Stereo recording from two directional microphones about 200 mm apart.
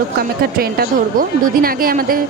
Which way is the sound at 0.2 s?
50° right (ahead or behind).